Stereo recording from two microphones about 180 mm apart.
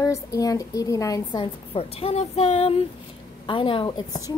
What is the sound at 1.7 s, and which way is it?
A woman's voice, 35° left (ahead or behind).